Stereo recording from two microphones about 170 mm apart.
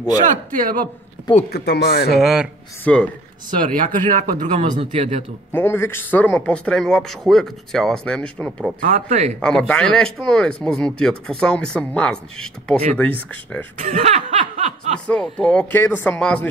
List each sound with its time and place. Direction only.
0.6 s speech: 55° right (ahead or behind)
1.5 s speech: 75° left (ahead or behind)
2.1 s speech: 5° right (ahead or behind)
3.4 s speech: 50° right (ahead or behind)
5.5 s speech: 15° left (ahead or behind)
8.8 s speech: 40° right (ahead or behind)
9.4 s speech: 5° left (ahead or behind)
13.7 s snicker: 40° right (ahead or behind)
15.0 s speech: 5° left (ahead or behind)